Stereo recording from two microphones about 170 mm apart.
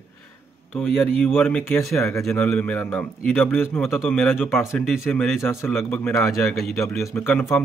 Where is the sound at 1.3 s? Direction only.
10° left (ahead or behind).